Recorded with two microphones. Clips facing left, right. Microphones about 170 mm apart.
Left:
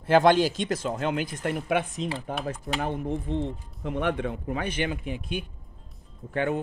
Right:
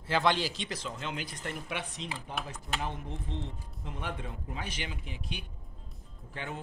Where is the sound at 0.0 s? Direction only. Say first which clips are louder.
Left 9 dB; 50° left (ahead or behind).